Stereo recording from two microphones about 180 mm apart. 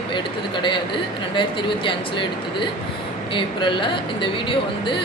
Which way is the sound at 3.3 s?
25° left (ahead or behind).